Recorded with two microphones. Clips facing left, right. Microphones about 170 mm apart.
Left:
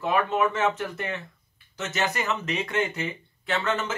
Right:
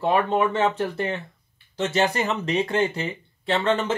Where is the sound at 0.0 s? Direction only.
35° right (ahead or behind).